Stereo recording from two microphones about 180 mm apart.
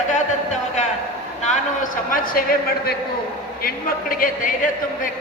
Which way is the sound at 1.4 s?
45° left (ahead or behind).